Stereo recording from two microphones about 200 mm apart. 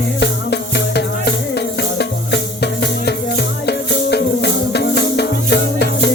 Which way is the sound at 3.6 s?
55° left (ahead or behind).